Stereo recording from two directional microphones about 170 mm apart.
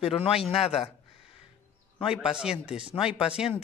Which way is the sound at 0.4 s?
Centre (ahead or behind).